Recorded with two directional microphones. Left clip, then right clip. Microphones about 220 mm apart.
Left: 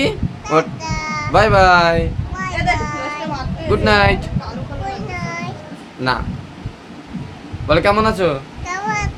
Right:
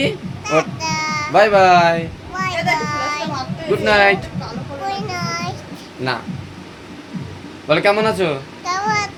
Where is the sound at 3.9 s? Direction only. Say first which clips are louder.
Right 1 dB; 20° left (ahead or behind).